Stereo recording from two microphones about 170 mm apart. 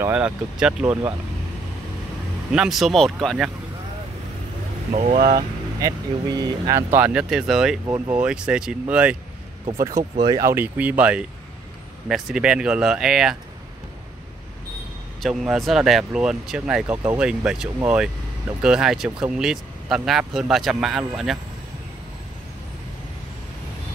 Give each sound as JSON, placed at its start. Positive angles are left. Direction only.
{"t": 0.0, "sound": "speech", "side_deg": -10}
{"t": 2.5, "sound": "speech", "side_deg": -5}
{"t": 4.9, "sound": "speech", "side_deg": -45}
{"t": 5.8, "sound": "speech", "side_deg": -20}
{"t": 10.2, "sound": "speech", "side_deg": -20}
{"t": 15.2, "sound": "speech", "side_deg": 0}